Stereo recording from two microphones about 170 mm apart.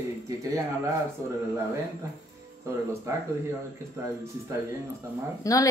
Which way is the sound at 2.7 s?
15° right (ahead or behind).